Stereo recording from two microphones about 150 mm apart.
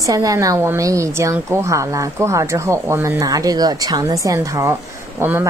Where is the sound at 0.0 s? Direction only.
20° right (ahead or behind).